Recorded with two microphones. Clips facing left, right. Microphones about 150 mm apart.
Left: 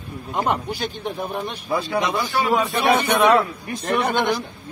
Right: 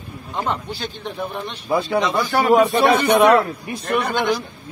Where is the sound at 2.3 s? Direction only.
55° right (ahead or behind).